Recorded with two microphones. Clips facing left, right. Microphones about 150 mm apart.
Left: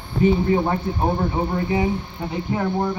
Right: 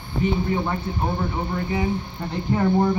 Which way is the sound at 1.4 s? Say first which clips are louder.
Left 4 dB; 20° left (ahead or behind).